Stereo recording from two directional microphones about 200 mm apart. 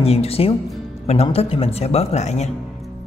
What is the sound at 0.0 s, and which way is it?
Speech, 30° left (ahead or behind).